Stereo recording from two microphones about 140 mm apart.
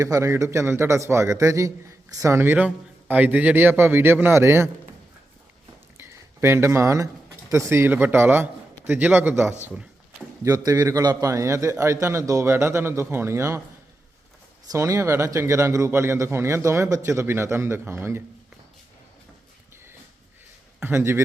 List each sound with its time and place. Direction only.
0.0 s a man's voice: 20° right (ahead or behind)
6.0 s a sound: 20° right (ahead or behind)
7.7 s a man's voice: 15° right (ahead or behind)
14.7 s a man's voice: 25° right (ahead or behind)
20.7 s speech: 15° right (ahead or behind)